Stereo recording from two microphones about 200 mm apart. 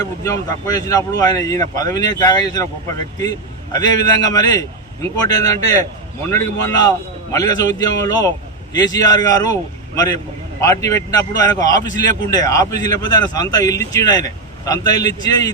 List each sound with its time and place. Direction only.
0.0 s a man's voice: 15° left (ahead or behind)